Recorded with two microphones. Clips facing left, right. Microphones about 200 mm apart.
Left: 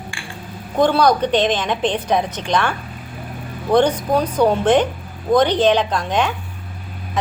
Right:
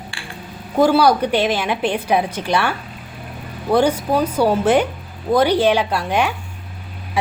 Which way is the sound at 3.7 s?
10° right (ahead or behind).